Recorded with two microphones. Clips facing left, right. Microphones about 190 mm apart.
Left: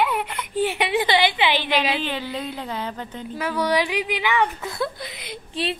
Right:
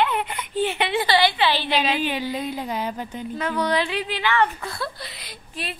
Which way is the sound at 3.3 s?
10° left (ahead or behind).